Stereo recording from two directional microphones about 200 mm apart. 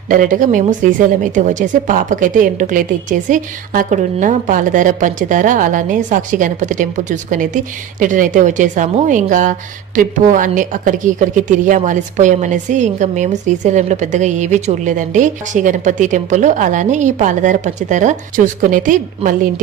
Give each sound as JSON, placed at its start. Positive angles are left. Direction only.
{"t": 0.1, "sound": "speech", "side_deg": -40}